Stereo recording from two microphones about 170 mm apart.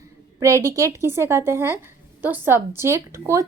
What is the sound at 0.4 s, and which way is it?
A woman's voice, 20° right (ahead or behind).